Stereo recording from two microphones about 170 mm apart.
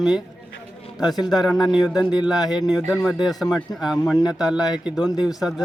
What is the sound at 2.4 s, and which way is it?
Speech, 25° left (ahead or behind).